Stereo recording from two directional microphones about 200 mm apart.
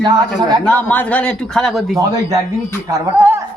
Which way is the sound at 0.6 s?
10° left (ahead or behind).